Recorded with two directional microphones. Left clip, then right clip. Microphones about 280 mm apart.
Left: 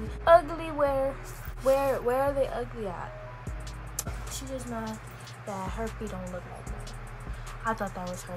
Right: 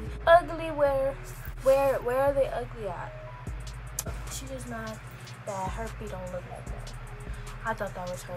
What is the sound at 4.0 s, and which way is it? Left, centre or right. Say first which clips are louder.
Music: even; centre.